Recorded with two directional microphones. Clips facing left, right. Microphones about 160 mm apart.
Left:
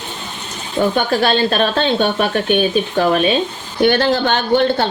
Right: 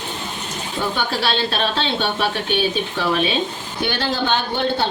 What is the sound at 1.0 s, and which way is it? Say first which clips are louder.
Speech: left 5 dB; 50° left (ahead or behind).